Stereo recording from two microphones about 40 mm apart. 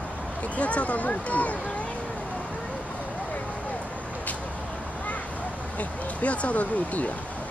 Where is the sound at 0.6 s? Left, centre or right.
Left.